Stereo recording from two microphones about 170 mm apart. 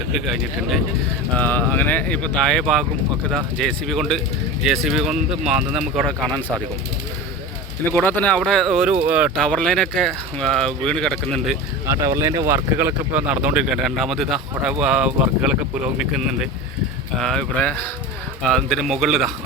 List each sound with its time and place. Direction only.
1.4 s speech: 10° left (ahead or behind)
7.9 s speech: 10° left (ahead or behind); by 9.3 s 5° right (ahead or behind)
9.3 s speech: 5° left (ahead or behind)
11.9 s speech: 15° right (ahead or behind)
17.2 s speech: 5° left (ahead or behind)